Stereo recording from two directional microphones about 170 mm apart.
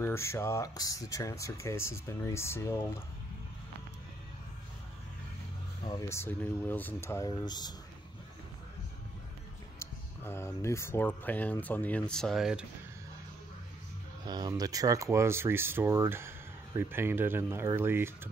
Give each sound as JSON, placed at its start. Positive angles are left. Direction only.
{"t": 0.0, "sound": "speech", "side_deg": 15}
{"t": 5.9, "sound": "speech", "side_deg": 15}
{"t": 9.8, "sound": "speech", "side_deg": 15}
{"t": 14.2, "sound": "speech", "side_deg": -25}